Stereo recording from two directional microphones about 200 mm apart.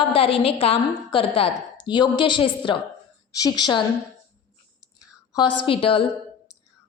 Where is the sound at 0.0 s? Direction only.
30° left (ahead or behind).